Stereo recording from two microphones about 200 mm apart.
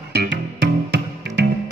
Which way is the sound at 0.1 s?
55° right (ahead or behind).